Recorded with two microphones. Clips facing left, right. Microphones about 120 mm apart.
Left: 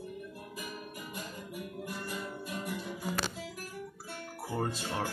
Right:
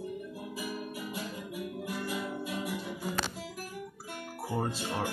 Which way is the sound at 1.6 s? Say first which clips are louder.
Right 4 dB; centre (ahead or behind).